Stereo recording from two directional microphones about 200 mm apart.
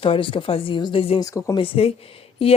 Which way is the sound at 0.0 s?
25° left (ahead or behind).